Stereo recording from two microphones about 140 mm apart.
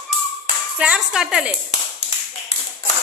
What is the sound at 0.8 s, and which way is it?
Speech, 5° right (ahead or behind).